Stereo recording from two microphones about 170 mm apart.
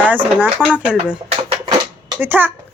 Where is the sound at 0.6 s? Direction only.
10° left (ahead or behind).